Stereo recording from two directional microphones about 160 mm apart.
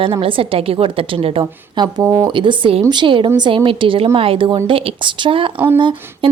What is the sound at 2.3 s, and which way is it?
Speech, 30° right (ahead or behind).